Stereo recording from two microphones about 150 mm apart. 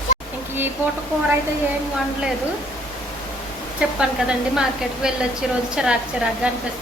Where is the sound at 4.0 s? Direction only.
5° right (ahead or behind).